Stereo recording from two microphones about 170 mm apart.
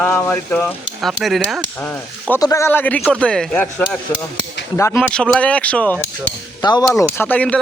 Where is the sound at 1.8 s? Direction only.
10° left (ahead or behind).